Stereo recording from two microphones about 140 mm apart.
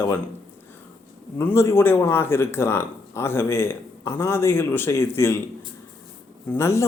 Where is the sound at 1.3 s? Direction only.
20° left (ahead or behind).